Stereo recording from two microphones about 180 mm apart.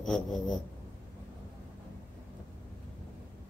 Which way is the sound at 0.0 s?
5° left (ahead or behind).